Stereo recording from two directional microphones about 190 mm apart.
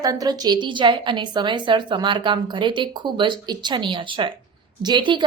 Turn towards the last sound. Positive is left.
turn(degrees=-25)  # may be behind; listen again after turning